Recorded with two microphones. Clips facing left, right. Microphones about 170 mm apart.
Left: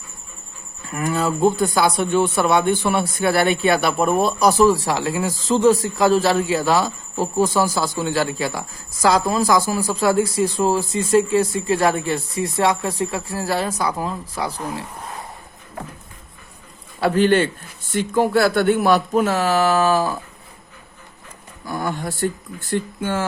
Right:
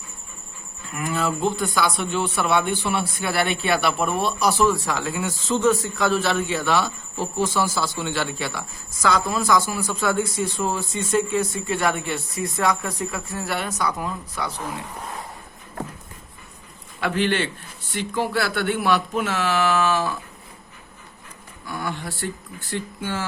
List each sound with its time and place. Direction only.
0.9 s speech: 40° left (ahead or behind)
17.0 s speech: 40° left (ahead or behind)
21.7 s speech: 45° left (ahead or behind)